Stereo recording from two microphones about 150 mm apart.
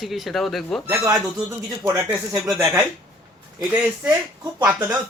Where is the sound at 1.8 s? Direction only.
15° right (ahead or behind).